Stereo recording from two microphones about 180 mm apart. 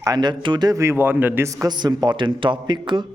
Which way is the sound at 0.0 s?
20° right (ahead or behind).